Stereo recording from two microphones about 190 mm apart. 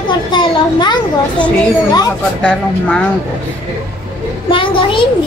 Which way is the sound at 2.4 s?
5° left (ahead or behind).